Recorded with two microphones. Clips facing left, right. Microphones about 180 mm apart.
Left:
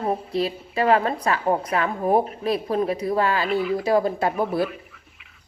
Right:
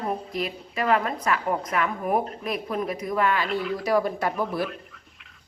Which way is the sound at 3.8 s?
25° left (ahead or behind).